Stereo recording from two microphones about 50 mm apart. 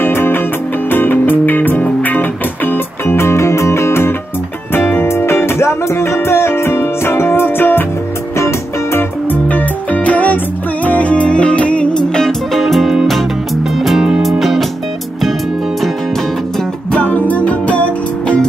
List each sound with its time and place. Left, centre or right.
0.0 s music: left
3.2 s music: left
4.7 s music: left
8.4 s music: left
9.3 s music: left; by 12.4 s centre
12.5 s music: centre
14.4 s music: centre
16.9 s music: left